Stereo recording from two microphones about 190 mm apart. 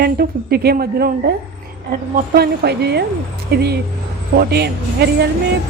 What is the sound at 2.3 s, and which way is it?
Speech, 60° right (ahead or behind).